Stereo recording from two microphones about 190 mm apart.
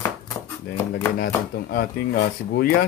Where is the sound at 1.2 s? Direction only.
50° left (ahead or behind).